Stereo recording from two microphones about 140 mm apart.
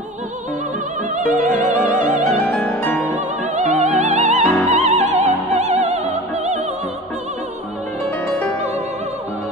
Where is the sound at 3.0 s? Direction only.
60° right (ahead or behind).